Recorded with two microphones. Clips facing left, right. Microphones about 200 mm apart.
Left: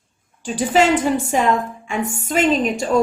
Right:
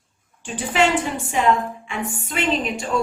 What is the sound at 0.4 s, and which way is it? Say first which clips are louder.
A woman's voice: left 4 dB; 40° left (ahead or behind).